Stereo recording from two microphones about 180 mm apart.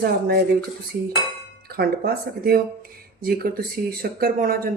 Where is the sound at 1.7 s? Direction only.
55° right (ahead or behind).